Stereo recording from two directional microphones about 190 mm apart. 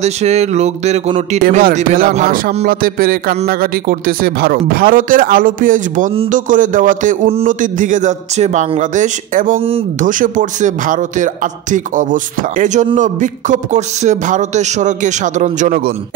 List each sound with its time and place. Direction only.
0.0 s a man's voice: 35° right (ahead or behind)
1.4 s a man's voice: 45° right (ahead or behind)